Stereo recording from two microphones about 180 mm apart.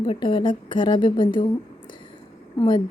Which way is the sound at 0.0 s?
25° left (ahead or behind).